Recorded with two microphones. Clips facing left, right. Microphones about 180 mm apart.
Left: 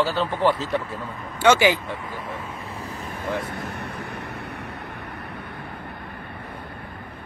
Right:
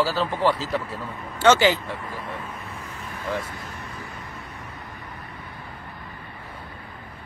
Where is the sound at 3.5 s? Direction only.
65° left (ahead or behind).